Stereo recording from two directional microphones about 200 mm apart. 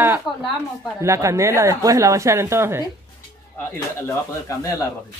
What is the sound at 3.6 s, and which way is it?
Speech, 10° left (ahead or behind).